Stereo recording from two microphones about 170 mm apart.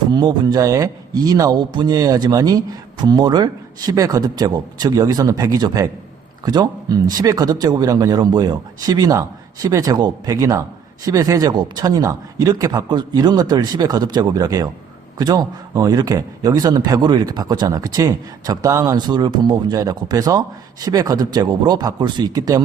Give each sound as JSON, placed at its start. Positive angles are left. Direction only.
{"t": 0.1, "sound": "speech", "side_deg": -25}